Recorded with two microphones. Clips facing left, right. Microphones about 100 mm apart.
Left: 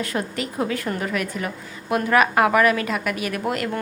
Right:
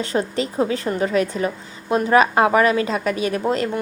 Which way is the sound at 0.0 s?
30° right (ahead or behind).